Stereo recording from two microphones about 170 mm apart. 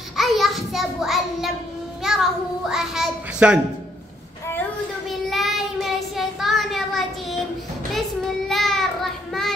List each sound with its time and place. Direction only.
0.2 s a sound: centre (ahead or behind)
2.0 s a child's voice: centre (ahead or behind)
5.3 s child singing: centre (ahead or behind)
8.5 s child singing: centre (ahead or behind)